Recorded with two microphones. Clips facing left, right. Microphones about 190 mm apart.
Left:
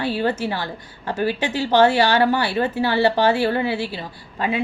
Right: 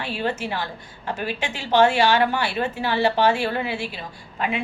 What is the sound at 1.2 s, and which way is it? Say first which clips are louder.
Speech: left 10 dB; 20° right (ahead or behind).